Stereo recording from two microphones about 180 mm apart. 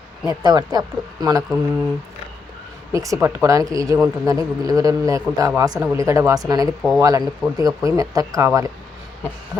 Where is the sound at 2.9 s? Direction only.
20° right (ahead or behind).